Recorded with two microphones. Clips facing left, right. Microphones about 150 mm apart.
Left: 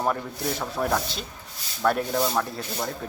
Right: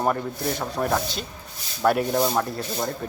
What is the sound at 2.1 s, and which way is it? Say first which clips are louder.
Speech: right 2 dB; 15° right (ahead or behind).